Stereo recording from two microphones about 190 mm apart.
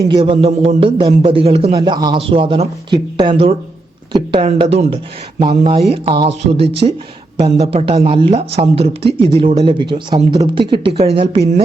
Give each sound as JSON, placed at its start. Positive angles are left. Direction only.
{"t": 0.1, "sound": "a man's voice", "side_deg": -30}